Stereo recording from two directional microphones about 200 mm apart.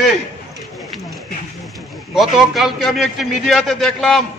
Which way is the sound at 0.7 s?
Centre (ahead or behind).